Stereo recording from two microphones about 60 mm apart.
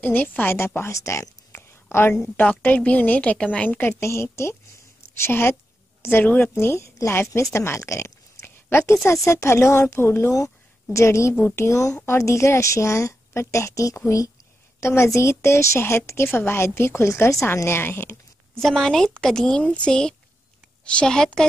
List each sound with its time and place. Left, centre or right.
0.0 s a woman's voice: left
0.6 s a woman's voice: left
0.9 s speech: left
1.5 s a sound: left
2.6 s a woman's voice: left
8.4 s a woman's voice: left
10.3 s a woman's voice: left
14.8 s a woman's voice: left
17.6 s a woman's voice: left
18.5 s a woman's voice: centre